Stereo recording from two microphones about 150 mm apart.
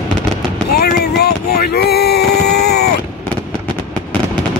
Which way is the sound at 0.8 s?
90° left.